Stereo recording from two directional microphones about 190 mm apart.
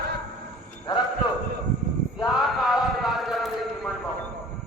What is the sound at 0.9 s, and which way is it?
Clip-clop, 25° left (ahead or behind).